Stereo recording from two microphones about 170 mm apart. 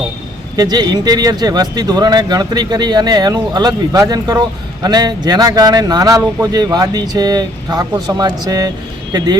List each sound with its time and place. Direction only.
0.5 s speech: 25° right (ahead or behind)